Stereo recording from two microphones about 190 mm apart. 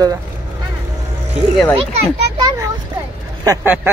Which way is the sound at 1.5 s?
5° left (ahead or behind).